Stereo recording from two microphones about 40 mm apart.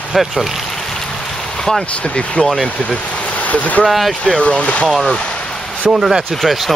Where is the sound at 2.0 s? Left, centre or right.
Left.